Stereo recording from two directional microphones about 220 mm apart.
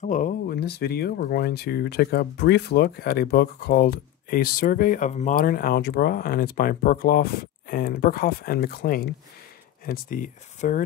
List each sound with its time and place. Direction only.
0.0 s speech: 35° left (ahead or behind)